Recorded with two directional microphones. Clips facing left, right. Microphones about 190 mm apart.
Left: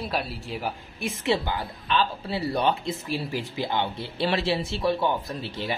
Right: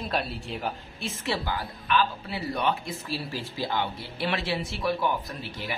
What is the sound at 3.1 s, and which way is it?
Speech, 20° left (ahead or behind).